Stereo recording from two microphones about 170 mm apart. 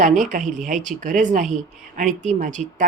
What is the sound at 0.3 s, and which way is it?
Speech, 50° right (ahead or behind).